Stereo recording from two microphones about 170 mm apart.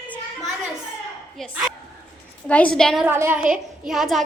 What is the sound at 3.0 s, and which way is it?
A woman's voice, 15° right (ahead or behind).